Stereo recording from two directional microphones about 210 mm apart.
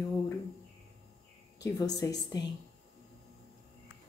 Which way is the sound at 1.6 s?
15° left (ahead or behind).